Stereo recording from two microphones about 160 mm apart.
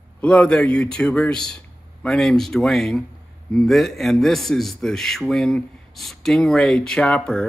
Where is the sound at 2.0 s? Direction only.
5° left (ahead or behind).